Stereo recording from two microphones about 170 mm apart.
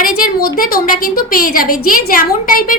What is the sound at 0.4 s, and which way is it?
A woman's voice, 60° left (ahead or behind).